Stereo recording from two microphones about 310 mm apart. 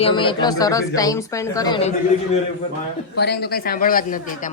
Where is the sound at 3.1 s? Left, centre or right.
Left.